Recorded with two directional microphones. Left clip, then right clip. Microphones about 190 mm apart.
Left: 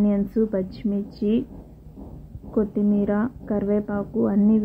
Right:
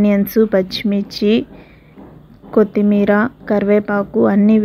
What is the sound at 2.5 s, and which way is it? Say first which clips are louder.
Speech: right 10 dB; 45° right (ahead or behind).